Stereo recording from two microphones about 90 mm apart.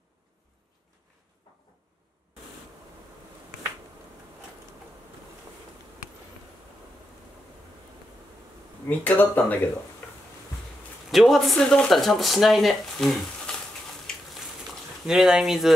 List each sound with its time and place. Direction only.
8.8 s speech: 20° left (ahead or behind)
10.0 s a sound: 20° left (ahead or behind)
11.1 s speech: centre (ahead or behind)
15.0 s speech: 5° right (ahead or behind)